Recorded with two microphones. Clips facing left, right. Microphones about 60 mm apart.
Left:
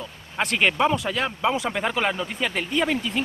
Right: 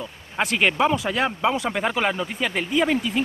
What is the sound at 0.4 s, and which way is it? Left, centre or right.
Speech, centre.